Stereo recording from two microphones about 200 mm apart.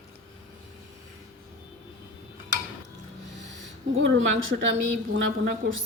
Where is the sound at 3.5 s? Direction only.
65° right (ahead or behind).